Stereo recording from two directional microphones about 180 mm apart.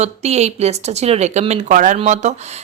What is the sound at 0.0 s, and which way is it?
Speech, 35° right (ahead or behind).